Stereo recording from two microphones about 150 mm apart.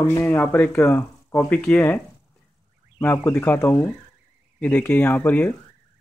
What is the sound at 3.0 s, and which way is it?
Speech, 15° left (ahead or behind).